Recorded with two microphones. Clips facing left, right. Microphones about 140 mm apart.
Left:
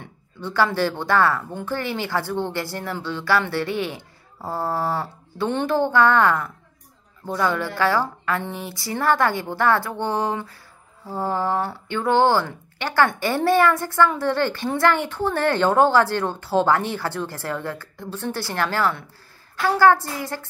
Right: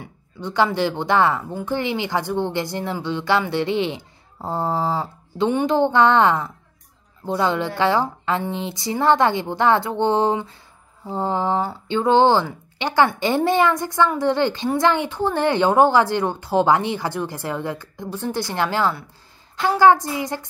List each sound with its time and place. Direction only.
0.0 s speech: 15° right (ahead or behind)
1.4 s speech: 5° right (ahead or behind)
1.7 s a woman's voice: 20° right (ahead or behind)